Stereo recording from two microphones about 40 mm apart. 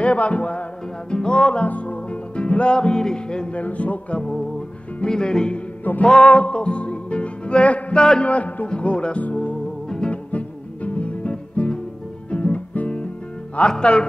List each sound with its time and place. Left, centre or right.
0.0 s speech: left
1.1 s music: left
3.5 s speech: left
4.2 s music: centre
8.3 s speech: left
9.2 s music: left
9.8 s music: centre
10.3 s music: left
12.3 s guitar: left
13.7 s music: left